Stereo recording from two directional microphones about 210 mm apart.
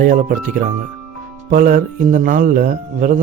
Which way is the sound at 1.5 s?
40° right (ahead or behind).